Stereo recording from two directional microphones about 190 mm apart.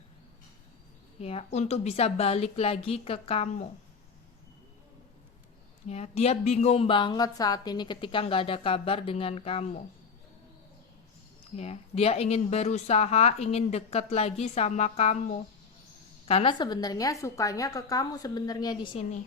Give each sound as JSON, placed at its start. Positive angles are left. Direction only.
{"t": 1.2, "sound": "speech", "side_deg": 35}
{"t": 5.9, "sound": "speech", "side_deg": 35}
{"t": 11.5, "sound": "speech", "side_deg": 35}